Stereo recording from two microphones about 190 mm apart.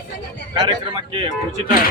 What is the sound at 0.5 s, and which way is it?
Speech, 25° right (ahead or behind).